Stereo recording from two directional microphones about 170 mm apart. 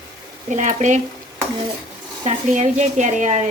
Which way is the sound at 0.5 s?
45° right (ahead or behind).